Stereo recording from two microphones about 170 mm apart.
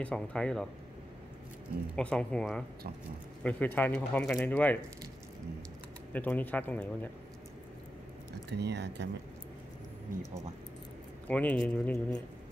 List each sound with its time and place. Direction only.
0.0 s speech: 5° left (ahead or behind)
2.0 s speech: 5° left (ahead or behind)
6.1 s speech: 10° left (ahead or behind)
8.5 s speech: 80° right
11.2 s speech: 10° left (ahead or behind)